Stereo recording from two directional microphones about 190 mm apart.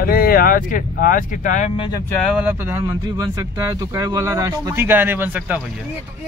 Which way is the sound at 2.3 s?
10° right (ahead or behind).